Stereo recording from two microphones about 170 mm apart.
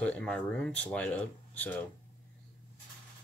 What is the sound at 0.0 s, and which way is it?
Speech, 5° left (ahead or behind).